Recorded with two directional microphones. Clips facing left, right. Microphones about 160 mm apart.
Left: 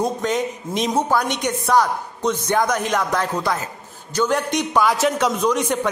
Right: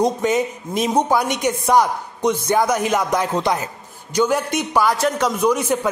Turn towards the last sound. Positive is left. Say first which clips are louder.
# right 2 dB
turn(degrees=-5)  # may be behind; listen again after turning